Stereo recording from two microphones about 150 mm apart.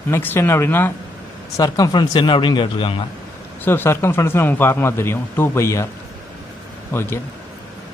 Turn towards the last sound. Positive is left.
turn(degrees=15)  # may be behind; listen again after turning